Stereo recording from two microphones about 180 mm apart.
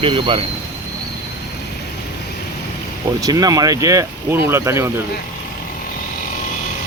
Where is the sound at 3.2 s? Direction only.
20° right (ahead or behind).